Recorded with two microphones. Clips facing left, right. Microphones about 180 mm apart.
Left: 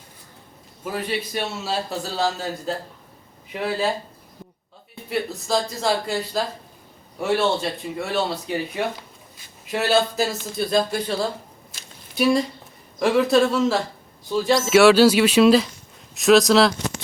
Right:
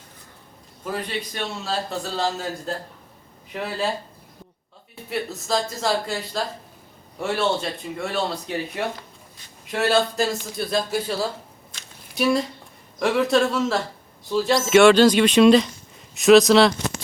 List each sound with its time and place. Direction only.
0.9 s a man's voice: 5° left (ahead or behind)
5.0 s a man's voice: centre (ahead or behind)
11.7 s a sound: centre (ahead or behind)
13.0 s a man's voice: centre (ahead or behind)